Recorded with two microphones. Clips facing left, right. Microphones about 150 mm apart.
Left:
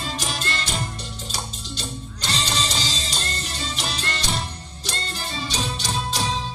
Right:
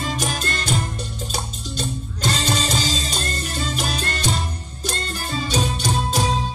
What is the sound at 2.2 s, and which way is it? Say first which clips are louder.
Music: right 5 dB; 50° right (ahead or behind).